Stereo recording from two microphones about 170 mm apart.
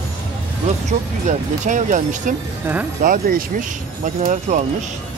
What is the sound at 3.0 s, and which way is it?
Speech, 55° right (ahead or behind).